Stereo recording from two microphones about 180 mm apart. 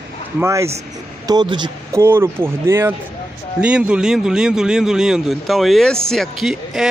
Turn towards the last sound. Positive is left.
turn(degrees=0)  # may be behind; listen again after turning